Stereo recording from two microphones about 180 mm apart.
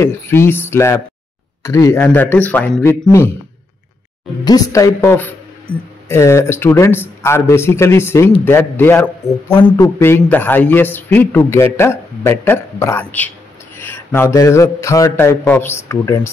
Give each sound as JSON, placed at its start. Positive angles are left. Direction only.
{"t": 0.0, "sound": "a man's voice", "side_deg": 15}
{"t": 4.5, "sound": "a man's voice", "side_deg": 20}